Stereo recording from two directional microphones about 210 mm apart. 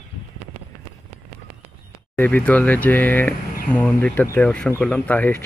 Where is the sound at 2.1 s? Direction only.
10° left (ahead or behind).